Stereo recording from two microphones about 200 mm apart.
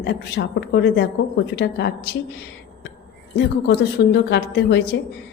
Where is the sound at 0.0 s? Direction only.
60° left (ahead or behind).